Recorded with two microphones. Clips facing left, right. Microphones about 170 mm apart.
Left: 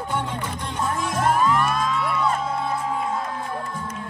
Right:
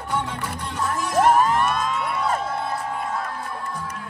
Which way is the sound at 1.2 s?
55° right (ahead or behind).